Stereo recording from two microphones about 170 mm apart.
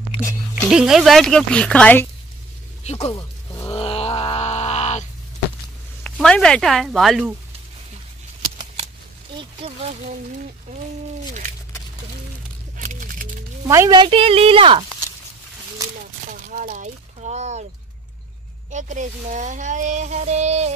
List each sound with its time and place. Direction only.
0.7 s speech: 5° right (ahead or behind)
2.8 s speech: 40° left (ahead or behind)
3.1 s a sound: 20° left (ahead or behind)
3.8 s groan: 35° left (ahead or behind)
6.0 s speech: 5° left (ahead or behind)
9.6 s speech: 35° right (ahead or behind)
12.7 s a sound: 50° right (ahead or behind)
13.7 s speech: 20° right (ahead or behind)
16.4 s a sound: 50° right (ahead or behind)
18.7 s a child's voice: 45° right (ahead or behind)